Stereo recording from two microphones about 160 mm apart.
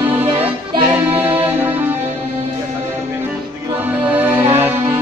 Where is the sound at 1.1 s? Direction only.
10° right (ahead or behind).